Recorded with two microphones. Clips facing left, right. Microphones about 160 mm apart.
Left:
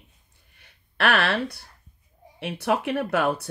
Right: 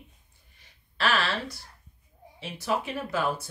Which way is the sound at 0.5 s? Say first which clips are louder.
Left 6 dB; 60° left (ahead or behind).